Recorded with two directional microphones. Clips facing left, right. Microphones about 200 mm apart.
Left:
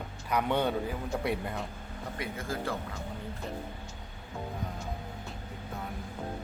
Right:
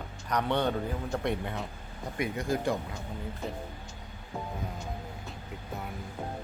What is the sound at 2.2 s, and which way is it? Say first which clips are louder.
Speech: right 6 dB; 15° right (ahead or behind).